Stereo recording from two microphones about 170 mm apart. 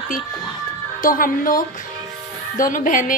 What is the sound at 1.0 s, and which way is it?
A woman's voice, 55° left (ahead or behind).